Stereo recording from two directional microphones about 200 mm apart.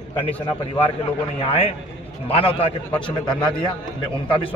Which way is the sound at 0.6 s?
25° left (ahead or behind).